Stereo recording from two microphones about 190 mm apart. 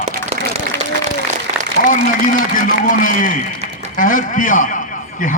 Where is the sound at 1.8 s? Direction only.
45° left (ahead or behind).